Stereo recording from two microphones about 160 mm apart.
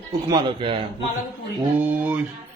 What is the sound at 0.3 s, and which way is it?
Speech, 25° right (ahead or behind).